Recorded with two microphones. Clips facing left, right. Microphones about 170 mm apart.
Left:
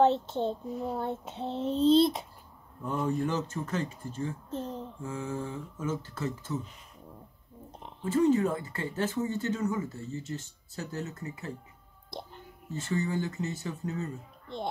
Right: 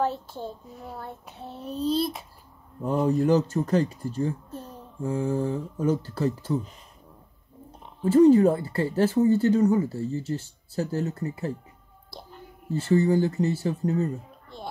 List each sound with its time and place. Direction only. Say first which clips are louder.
0.0 s child singing: left 4 dB; 25° left (ahead or behind)
2.8 s speech: right 7 dB; 35° right (ahead or behind)
4.5 s speech: left 4 dB; 25° left (ahead or behind)
5.0 s speech: right 10 dB; 35° right (ahead or behind)
8.0 s speech: right 9 dB; 35° right (ahead or behind)
12.1 s music: left 3 dB; 20° left (ahead or behind)
12.6 s speech: right 10 dB; 35° right (ahead or behind)
14.5 s child singing: left 4 dB; 20° left (ahead or behind)